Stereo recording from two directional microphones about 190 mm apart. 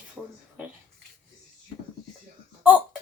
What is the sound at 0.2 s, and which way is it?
Speech, 10° right (ahead or behind).